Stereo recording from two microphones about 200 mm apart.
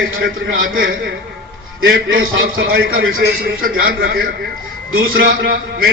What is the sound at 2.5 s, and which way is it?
Speech, 50° right (ahead or behind).